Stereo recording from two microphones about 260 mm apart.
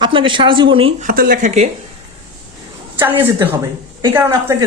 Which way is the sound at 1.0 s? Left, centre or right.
Right.